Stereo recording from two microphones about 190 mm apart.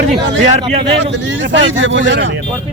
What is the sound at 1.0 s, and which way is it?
Speech, 70° right (ahead or behind).